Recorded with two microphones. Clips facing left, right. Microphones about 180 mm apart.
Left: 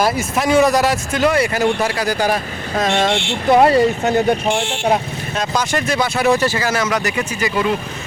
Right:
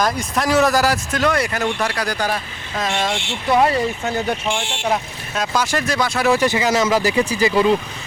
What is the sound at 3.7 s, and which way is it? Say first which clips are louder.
Speech: left 6 dB; 70° left (ahead or behind).